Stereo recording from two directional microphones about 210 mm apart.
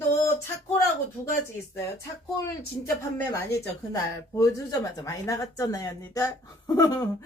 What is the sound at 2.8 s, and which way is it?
Speech, 15° left (ahead or behind).